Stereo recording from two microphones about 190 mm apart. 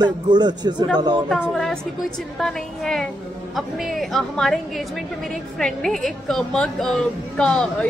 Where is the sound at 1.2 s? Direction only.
Centre (ahead or behind).